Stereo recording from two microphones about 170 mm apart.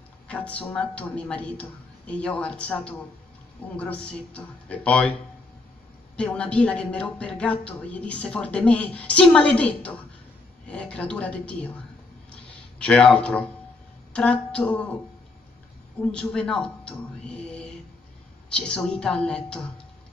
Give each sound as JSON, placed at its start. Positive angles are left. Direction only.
{"t": 0.3, "sound": "speech", "side_deg": 10}
{"t": 6.1, "sound": "speech", "side_deg": 5}
{"t": 12.3, "sound": "a sound", "side_deg": 5}
{"t": 14.1, "sound": "speech", "side_deg": 5}
{"t": 16.1, "sound": "speech", "side_deg": 5}